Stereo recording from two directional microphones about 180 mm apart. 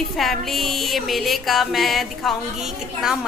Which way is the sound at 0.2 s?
Centre (ahead or behind).